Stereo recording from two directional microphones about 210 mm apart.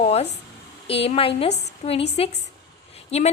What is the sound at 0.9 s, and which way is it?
A woman's voice, 25° left (ahead or behind).